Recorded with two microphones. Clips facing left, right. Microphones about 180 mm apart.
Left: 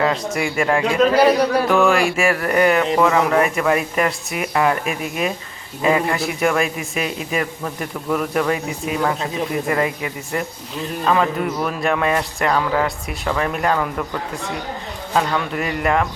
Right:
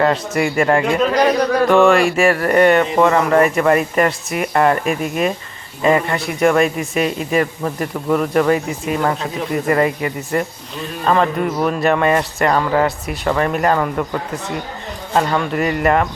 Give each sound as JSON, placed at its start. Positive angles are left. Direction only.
{"t": 0.0, "sound": "speech", "side_deg": 0}
{"t": 15.1, "sound": "speech", "side_deg": 0}